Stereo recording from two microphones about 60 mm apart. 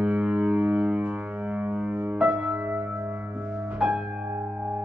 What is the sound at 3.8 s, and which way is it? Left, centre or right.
Music, centre.